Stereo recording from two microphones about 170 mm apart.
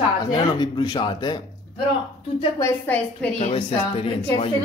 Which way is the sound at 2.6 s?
10° left (ahead or behind).